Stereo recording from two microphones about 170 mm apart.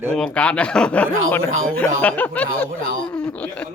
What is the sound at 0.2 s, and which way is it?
Speech, 5° left (ahead or behind).